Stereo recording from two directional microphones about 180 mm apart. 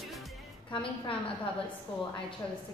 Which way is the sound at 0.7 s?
30° left (ahead or behind).